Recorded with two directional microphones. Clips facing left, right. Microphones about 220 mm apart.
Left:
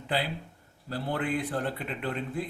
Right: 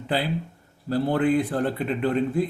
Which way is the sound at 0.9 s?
40° right (ahead or behind).